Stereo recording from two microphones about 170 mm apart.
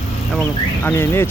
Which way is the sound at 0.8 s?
15° left (ahead or behind).